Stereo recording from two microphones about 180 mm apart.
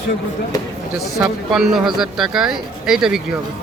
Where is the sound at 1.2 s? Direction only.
Centre (ahead or behind).